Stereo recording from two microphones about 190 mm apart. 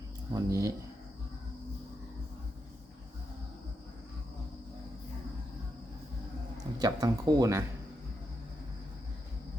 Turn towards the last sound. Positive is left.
turn(degrees=-15)  # may be behind; listen again after turning